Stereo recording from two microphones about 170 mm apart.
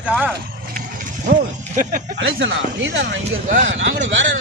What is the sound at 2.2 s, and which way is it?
Speech, 90° right.